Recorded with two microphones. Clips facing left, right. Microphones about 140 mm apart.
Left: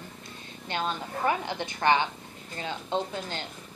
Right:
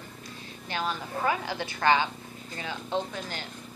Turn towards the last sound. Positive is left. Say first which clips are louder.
# left 1 dB
turn(degrees=25)  # may be behind; listen again after turning